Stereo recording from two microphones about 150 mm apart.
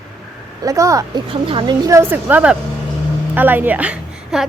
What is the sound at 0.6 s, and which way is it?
Speech, 20° right (ahead or behind).